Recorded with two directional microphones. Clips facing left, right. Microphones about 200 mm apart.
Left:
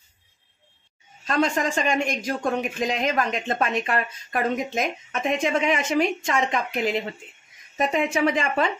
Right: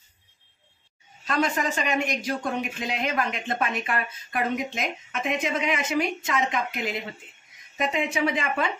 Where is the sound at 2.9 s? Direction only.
40° left (ahead or behind).